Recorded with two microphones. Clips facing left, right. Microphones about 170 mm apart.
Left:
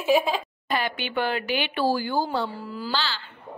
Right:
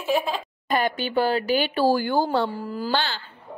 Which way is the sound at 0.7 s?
45° right (ahead or behind).